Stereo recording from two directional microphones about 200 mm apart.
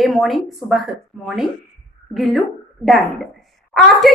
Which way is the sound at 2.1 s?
Centre (ahead or behind).